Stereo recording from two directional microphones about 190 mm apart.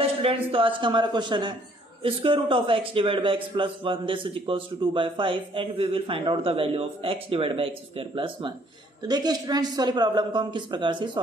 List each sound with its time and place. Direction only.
0.2 s a man's voice: 30° right (ahead or behind)